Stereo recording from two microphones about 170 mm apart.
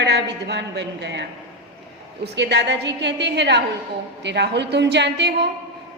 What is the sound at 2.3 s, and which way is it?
A woman's voice, 90° right.